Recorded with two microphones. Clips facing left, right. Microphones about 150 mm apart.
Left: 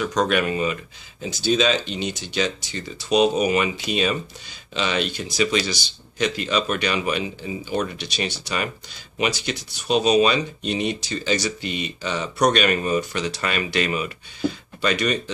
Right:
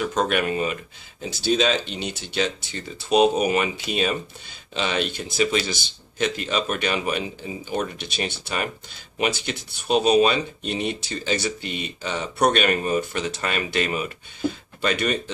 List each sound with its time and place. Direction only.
0.0 s speech: 50° right (ahead or behind)
1.3 s speech: 60° right (ahead or behind)